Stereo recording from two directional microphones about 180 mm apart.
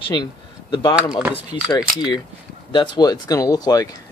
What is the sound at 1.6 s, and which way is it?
Speech, 20° left (ahead or behind).